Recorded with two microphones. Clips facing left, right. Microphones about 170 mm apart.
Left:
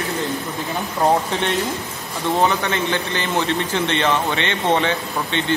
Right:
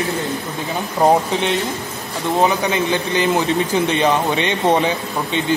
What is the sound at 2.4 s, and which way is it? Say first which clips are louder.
A man's voice: right 3 dB; 10° right (ahead or behind).